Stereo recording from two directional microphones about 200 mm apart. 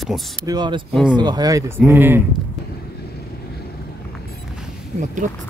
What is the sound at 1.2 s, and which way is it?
Speech, 20° right (ahead or behind).